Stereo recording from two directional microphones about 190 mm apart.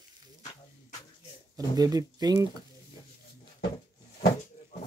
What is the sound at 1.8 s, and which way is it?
Speech, 20° right (ahead or behind).